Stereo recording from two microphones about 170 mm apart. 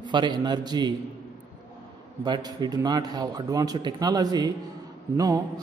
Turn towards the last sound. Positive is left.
turn(degrees=-20)  # may be behind; listen again after turning